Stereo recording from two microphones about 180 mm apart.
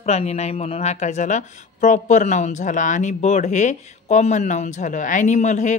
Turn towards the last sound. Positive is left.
turn(degrees=40)  # may be behind; listen again after turning